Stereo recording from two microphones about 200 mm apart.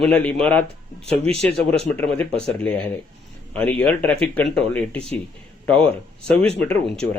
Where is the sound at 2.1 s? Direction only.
5° left (ahead or behind).